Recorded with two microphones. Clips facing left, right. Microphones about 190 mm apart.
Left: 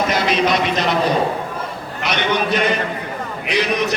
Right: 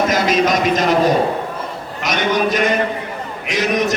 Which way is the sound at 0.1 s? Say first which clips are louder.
Right 2 dB; 45° right (ahead or behind).